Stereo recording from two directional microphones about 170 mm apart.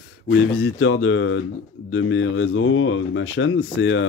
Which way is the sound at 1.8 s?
90° left.